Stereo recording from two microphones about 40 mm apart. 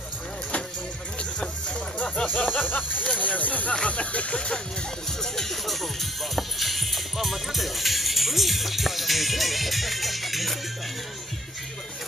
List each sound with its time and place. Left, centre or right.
2.0 s music: left
2.2 s music: left
3.2 s speech: left
3.8 s music: left
5.2 s speech: centre